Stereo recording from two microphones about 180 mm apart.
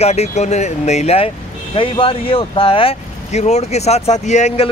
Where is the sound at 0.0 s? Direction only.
35° left (ahead or behind).